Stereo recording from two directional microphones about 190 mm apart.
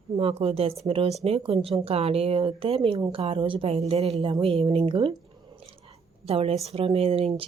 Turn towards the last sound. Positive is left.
turn(degrees=-30)  # may be behind; listen again after turning